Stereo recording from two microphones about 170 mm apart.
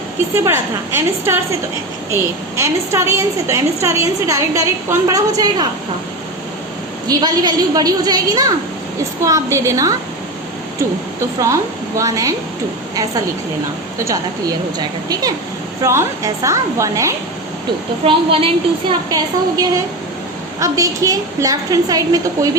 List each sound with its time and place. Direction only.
0.4 s a woman's voice: 15° right (ahead or behind)
2.6 s a woman's voice: 15° right (ahead or behind)
7.1 s a woman's voice: 25° right (ahead or behind)
14.0 s a woman's voice: 20° right (ahead or behind)
18.0 s a woman's voice: 35° right (ahead or behind)